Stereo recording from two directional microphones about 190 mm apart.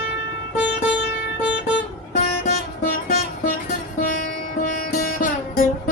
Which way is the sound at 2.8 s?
40° left (ahead or behind).